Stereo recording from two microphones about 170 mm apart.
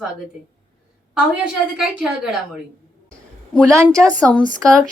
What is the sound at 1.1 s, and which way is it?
A woman's voice, 5° right (ahead or behind).